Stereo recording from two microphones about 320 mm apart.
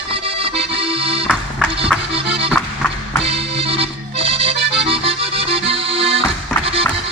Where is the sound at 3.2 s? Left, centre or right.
Centre.